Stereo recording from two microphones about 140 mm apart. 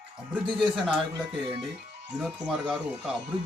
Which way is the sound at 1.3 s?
35° right (ahead or behind).